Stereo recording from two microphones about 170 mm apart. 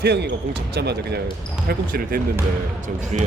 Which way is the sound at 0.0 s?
85° right.